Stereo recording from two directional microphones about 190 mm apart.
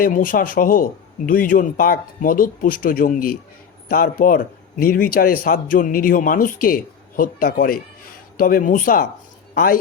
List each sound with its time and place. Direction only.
0.0 s a man's voice: 45° left (ahead or behind)